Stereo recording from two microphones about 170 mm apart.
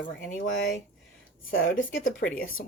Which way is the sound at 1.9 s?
55° left (ahead or behind).